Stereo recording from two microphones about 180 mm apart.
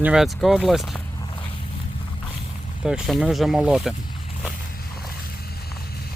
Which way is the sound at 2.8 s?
Centre (ahead or behind).